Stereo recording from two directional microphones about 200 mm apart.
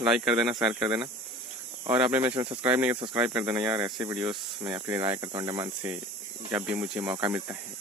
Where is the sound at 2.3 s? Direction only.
25° right (ahead or behind).